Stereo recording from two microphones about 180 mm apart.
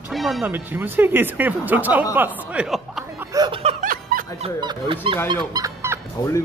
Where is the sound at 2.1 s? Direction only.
10° right (ahead or behind).